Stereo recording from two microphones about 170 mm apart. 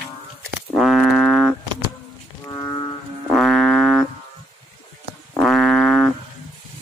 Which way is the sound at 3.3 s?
Centre (ahead or behind).